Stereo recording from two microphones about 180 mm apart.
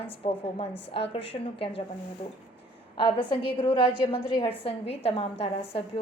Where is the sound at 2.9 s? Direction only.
30° left (ahead or behind).